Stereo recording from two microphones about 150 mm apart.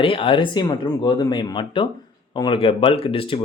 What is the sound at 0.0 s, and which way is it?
Speech, 35° left (ahead or behind).